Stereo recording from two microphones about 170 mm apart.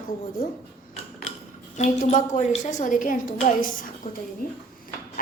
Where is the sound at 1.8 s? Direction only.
45° left (ahead or behind).